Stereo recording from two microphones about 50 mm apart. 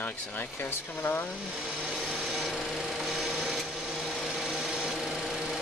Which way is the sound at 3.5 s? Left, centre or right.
Centre.